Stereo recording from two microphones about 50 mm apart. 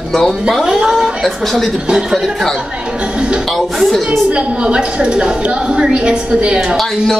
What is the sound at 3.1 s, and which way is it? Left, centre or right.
Speech, centre.